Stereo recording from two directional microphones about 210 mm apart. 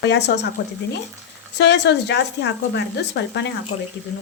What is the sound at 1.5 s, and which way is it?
Speech, 55° left (ahead or behind).